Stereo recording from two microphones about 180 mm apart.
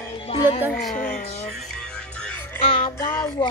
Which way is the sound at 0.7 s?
Centre (ahead or behind).